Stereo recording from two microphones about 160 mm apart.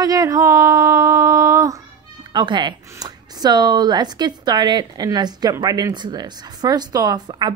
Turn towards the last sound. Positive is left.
turn(degrees=-25)  # may be behind; listen again after turning